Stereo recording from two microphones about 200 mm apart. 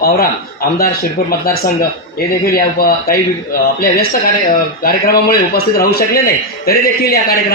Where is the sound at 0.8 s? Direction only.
50° left (ahead or behind).